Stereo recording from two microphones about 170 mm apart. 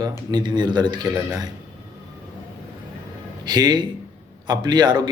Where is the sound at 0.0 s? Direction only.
25° right (ahead or behind).